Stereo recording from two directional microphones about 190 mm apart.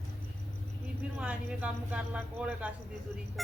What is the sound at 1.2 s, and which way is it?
Speech, 5° right (ahead or behind).